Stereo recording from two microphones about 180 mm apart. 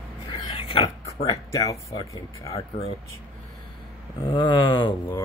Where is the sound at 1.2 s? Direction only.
20° left (ahead or behind).